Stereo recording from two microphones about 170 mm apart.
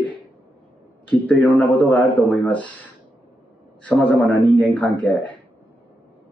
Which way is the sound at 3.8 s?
10° left (ahead or behind).